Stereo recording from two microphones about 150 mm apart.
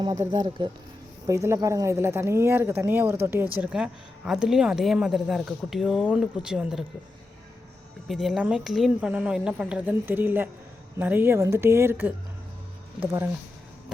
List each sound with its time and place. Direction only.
0.0 s speech: 25° right (ahead or behind); by 6.8 s 5° right (ahead or behind)
8.0 s speech: centre (ahead or behind)